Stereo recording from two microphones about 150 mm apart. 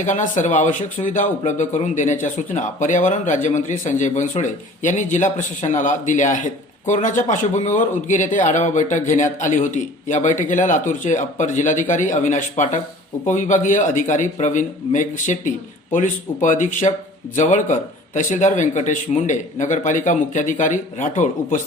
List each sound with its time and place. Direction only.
0.0 s speech: 55° left (ahead or behind)
16.9 s speech: 40° left (ahead or behind)
17.3 s speech: 55° left (ahead or behind)